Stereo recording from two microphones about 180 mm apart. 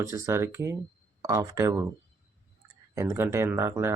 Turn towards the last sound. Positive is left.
turn(degrees=-15)  # may be behind; listen again after turning